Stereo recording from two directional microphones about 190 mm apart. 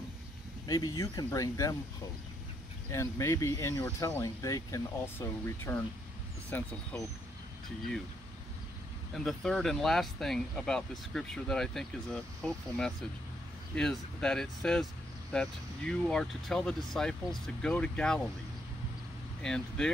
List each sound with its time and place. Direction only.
0.7 s speech: 20° left (ahead or behind)
2.9 s speech: 15° left (ahead or behind)
9.1 s speech: centre (ahead or behind)
19.4 s speech: 5° left (ahead or behind)